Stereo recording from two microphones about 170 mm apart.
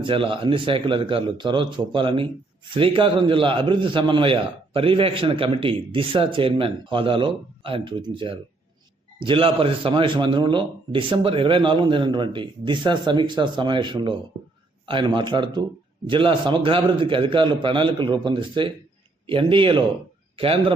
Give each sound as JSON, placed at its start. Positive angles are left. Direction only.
{"t": 0.0, "sound": "a man's voice", "side_deg": -30}